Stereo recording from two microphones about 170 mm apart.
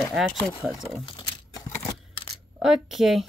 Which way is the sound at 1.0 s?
20° left (ahead or behind).